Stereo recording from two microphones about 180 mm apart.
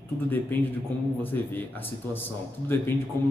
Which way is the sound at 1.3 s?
10° left (ahead or behind).